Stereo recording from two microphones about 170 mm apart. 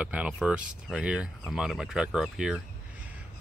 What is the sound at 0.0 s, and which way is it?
Speech, 5° right (ahead or behind).